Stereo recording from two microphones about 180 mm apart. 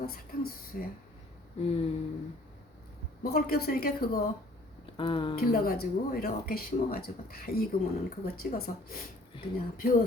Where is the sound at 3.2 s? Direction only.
60° left (ahead or behind).